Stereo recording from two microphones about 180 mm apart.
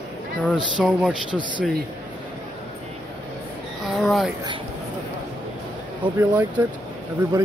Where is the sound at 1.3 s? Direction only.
25° right (ahead or behind).